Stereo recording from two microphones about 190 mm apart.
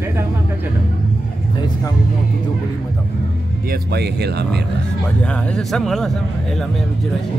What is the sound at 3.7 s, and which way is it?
Speech, 60° right (ahead or behind).